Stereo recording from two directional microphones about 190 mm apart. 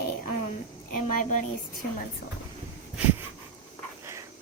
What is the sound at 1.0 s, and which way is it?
Speech, 40° left (ahead or behind).